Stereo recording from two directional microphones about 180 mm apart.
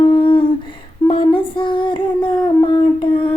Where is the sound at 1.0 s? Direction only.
30° left (ahead or behind).